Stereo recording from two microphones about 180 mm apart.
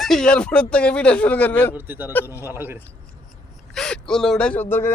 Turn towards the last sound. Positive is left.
turn(degrees=10)  # may be behind; listen again after turning